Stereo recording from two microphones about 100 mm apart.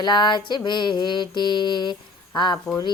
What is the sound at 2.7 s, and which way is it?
Speech, 35° left (ahead or behind).